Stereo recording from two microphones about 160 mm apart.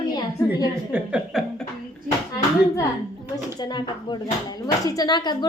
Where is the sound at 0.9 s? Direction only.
5° right (ahead or behind).